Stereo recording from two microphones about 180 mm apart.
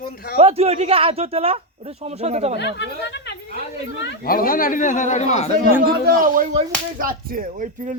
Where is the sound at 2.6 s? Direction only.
75° left (ahead or behind).